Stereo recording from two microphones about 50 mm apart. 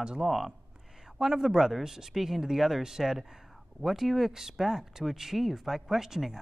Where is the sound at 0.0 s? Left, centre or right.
Centre.